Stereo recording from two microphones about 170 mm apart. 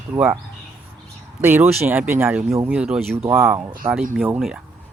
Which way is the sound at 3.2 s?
15° right (ahead or behind).